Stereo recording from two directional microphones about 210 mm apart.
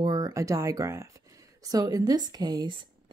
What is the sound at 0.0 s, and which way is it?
Speech, 20° right (ahead or behind).